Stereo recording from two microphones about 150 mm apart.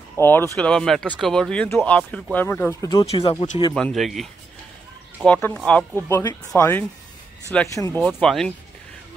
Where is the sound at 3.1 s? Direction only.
35° left (ahead or behind).